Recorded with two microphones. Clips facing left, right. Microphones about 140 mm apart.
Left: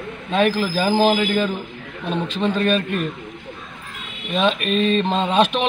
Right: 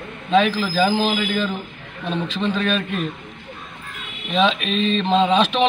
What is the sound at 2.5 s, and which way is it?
Speech, 50° left (ahead or behind).